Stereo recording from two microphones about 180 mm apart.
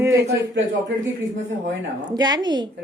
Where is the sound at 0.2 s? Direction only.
65° right (ahead or behind).